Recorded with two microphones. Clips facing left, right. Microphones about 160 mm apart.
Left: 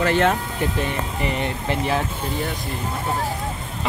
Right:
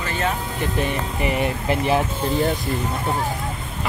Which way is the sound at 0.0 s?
75° left (ahead or behind).